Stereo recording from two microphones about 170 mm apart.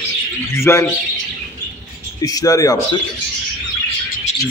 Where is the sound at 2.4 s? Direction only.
20° left (ahead or behind).